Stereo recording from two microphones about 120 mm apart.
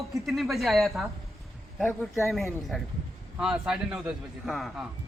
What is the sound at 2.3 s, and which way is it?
Speech, centre (ahead or behind).